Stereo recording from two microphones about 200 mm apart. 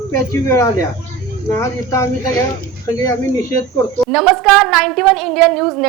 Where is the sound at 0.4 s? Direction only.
15° left (ahead or behind).